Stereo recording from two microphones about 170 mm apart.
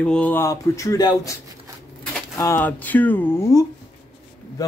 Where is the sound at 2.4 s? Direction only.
15° left (ahead or behind).